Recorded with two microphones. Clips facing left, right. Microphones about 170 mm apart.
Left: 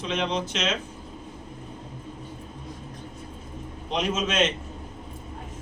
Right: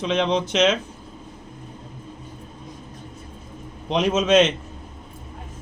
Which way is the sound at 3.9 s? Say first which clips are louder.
Right 9 dB; 90° right.